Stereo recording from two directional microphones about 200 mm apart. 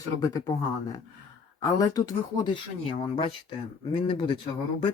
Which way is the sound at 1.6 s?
20° left (ahead or behind).